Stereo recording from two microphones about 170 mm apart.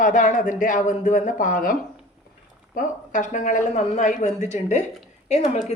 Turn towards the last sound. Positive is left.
turn(degrees=40)  # may be behind; listen again after turning